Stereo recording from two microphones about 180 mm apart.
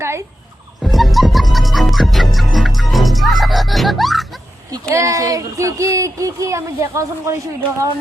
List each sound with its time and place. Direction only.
0.0 s fowl: 15° right (ahead or behind)
0.8 s music: centre (ahead or behind)
4.7 s speech: 15° right (ahead or behind)